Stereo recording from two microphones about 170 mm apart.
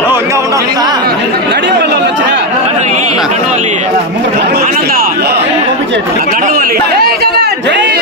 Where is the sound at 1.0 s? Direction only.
80° right.